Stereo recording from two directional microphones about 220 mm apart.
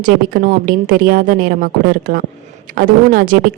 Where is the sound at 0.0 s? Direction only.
40° right (ahead or behind).